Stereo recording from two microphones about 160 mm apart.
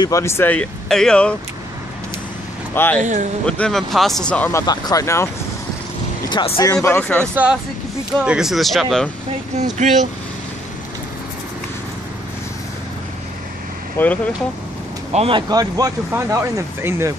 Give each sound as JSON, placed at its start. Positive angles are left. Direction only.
{"t": 0.0, "sound": "speech", "side_deg": 20}
{"t": 2.7, "sound": "speech", "side_deg": 10}
{"t": 3.0, "sound": "speech", "side_deg": -50}
{"t": 3.4, "sound": "speech", "side_deg": 5}
{"t": 6.3, "sound": "speech", "side_deg": 35}
{"t": 6.6, "sound": "speech", "side_deg": 20}
{"t": 8.3, "sound": "speech", "side_deg": -5}
{"t": 9.6, "sound": "speech", "side_deg": -50}
{"t": 13.9, "sound": "speech", "side_deg": 10}
{"t": 15.1, "sound": "speech", "side_deg": -35}
{"t": 15.5, "sound": "speech", "side_deg": -20}